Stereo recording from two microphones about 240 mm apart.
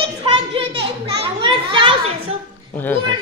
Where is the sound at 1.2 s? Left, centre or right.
Right.